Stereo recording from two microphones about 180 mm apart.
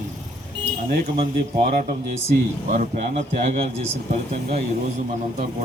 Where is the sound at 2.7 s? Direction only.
45° right (ahead or behind).